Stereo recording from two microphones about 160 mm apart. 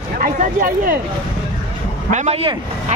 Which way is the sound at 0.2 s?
60° right (ahead or behind).